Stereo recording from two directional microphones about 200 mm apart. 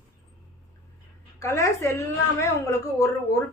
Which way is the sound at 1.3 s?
15° left (ahead or behind).